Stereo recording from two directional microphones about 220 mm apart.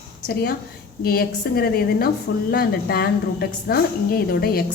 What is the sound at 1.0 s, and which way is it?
A woman's voice, 45° left (ahead or behind).